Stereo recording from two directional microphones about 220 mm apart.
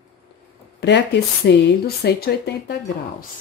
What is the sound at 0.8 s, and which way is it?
Speech, 50° left (ahead or behind).